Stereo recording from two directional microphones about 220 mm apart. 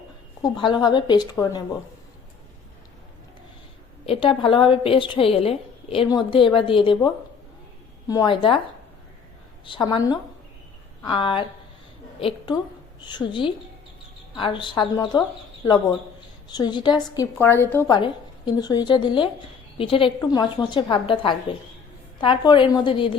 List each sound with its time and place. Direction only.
0.4 s a woman's voice: 20° left (ahead or behind)
4.0 s a woman's voice: 25° left (ahead or behind)
9.6 s a woman's voice: 20° left (ahead or behind)
13.0 s a woman's voice: 20° left (ahead or behind)